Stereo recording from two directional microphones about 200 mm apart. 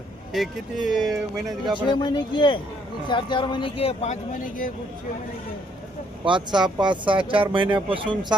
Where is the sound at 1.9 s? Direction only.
20° left (ahead or behind); by 4.7 s 40° left (ahead or behind).